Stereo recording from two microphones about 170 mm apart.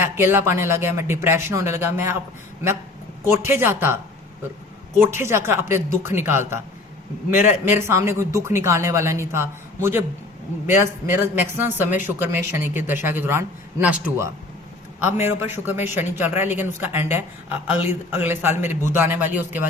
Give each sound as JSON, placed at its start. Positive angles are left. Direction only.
{"t": 0.0, "sound": "speech", "side_deg": -15}
{"t": 3.4, "sound": "speech", "side_deg": -15}
{"t": 4.9, "sound": "speech", "side_deg": -15}